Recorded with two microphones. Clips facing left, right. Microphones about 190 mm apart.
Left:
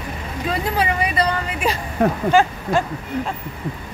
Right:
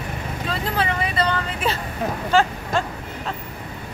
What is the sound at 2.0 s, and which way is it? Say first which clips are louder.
Speech: left 9 dB; 60° left (ahead or behind).